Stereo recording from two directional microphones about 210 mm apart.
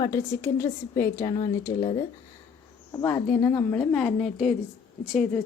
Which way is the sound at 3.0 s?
10° left (ahead or behind).